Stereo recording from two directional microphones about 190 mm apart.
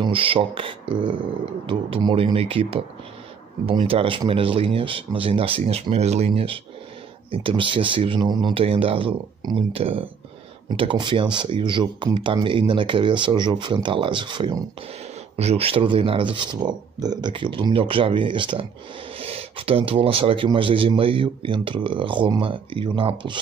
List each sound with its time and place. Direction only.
0.0 s speech: 30° right (ahead or behind)